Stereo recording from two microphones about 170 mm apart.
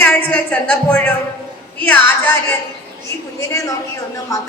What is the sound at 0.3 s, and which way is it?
A woman's voice, 10° left (ahead or behind).